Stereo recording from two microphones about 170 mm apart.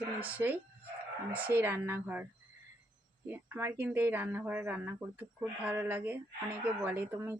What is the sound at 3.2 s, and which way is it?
Speech, 10° right (ahead or behind).